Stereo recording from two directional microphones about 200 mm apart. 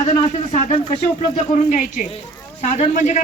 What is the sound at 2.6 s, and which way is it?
Speech, 35° left (ahead or behind).